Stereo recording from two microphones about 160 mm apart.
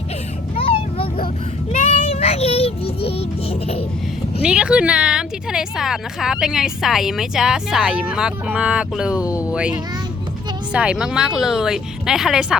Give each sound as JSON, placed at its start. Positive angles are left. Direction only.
{"t": 0.5, "sound": "vehicle", "side_deg": 35}
{"t": 1.9, "sound": "child singing", "side_deg": 40}
{"t": 4.4, "sound": "a woman's voice", "side_deg": -5}
{"t": 9.2, "sound": "speech", "side_deg": 20}
{"t": 9.5, "sound": "a child's voice", "side_deg": -5}